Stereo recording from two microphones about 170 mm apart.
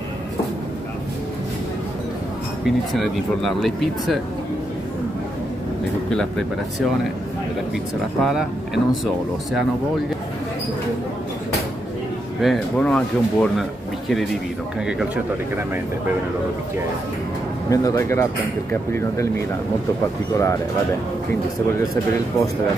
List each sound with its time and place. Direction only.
2.6 s speech: centre (ahead or behind)
6.0 s speech: 5° left (ahead or behind)
8.2 s speech: centre (ahead or behind)
12.4 s speech: 5° left (ahead or behind)
17.6 s speech: 20° left (ahead or behind)
20.3 s speech: 20° left (ahead or behind)
21.7 s speech: 15° left (ahead or behind)